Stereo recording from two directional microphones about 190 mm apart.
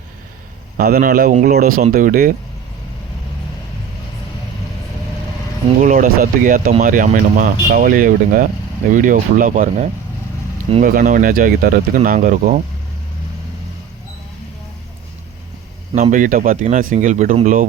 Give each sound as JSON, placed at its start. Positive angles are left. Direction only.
{"t": 0.8, "sound": "speech", "side_deg": -50}
{"t": 5.8, "sound": "speech", "side_deg": -45}
{"t": 16.0, "sound": "speech", "side_deg": -40}